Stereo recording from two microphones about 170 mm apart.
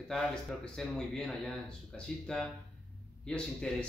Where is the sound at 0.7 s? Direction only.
5° left (ahead or behind).